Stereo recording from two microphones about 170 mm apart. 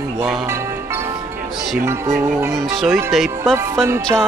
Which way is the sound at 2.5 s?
Centre (ahead or behind).